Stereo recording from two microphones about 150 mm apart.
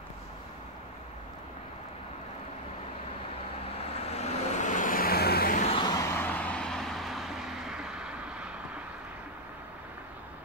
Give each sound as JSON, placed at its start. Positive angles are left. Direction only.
{"t": 3.9, "sound": "vehicle", "side_deg": 45}
{"t": 5.8, "sound": "vehicle", "side_deg": 25}